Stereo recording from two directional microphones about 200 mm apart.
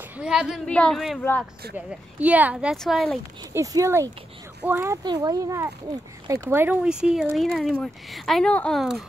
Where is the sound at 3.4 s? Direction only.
15° right (ahead or behind).